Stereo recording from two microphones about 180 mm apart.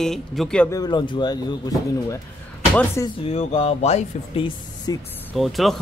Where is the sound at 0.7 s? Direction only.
25° left (ahead or behind).